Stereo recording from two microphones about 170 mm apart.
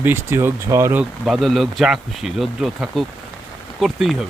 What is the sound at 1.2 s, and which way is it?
Speech, centre (ahead or behind).